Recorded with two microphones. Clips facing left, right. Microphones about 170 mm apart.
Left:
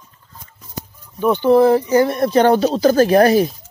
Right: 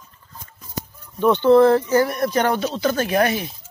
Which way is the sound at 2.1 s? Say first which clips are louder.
Left 6 dB; 30° left (ahead or behind).